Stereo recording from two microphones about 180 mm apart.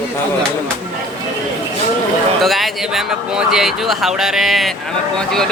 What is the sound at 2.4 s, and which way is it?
Speech, centre (ahead or behind).